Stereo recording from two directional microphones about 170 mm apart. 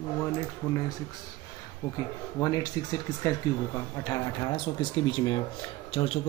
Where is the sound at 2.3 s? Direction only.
20° left (ahead or behind).